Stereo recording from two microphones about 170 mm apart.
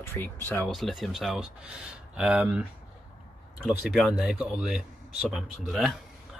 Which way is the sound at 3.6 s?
5° right (ahead or behind).